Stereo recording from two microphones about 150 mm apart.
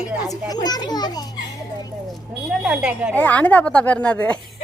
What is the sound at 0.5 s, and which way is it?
A child's voice, 25° left (ahead or behind).